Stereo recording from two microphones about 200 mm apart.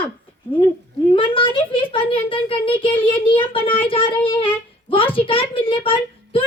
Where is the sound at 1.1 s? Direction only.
25° left (ahead or behind).